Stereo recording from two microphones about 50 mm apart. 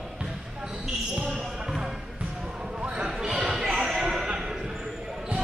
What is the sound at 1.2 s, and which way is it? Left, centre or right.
Basketball bounce, centre.